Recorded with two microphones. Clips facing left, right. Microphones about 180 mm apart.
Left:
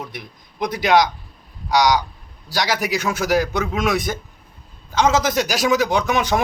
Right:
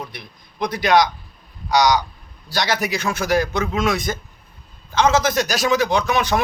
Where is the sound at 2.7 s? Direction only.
5° left (ahead or behind).